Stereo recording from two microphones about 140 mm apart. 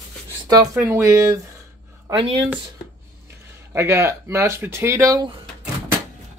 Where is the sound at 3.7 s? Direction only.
20° right (ahead or behind).